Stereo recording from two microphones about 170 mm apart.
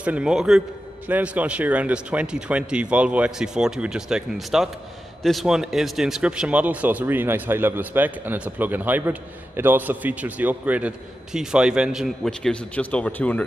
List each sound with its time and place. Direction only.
0.0 s a man's voice: 5° right (ahead or behind)